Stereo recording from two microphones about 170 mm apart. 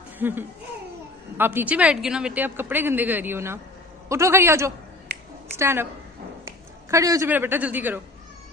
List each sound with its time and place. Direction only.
0.2 s speech: 10° right (ahead or behind)
6.9 s speech: 20° right (ahead or behind)